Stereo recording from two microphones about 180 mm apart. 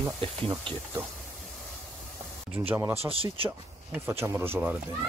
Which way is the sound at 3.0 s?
30° right (ahead or behind).